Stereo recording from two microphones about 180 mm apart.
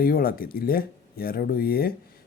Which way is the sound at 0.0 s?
55° left (ahead or behind).